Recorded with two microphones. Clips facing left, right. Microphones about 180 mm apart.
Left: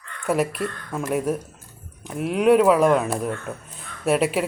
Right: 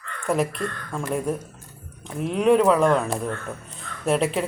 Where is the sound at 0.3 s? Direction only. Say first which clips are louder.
Left 1 dB; 5° left (ahead or behind).